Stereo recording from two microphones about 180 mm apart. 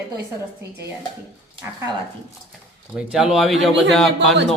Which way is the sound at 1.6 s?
15° right (ahead or behind).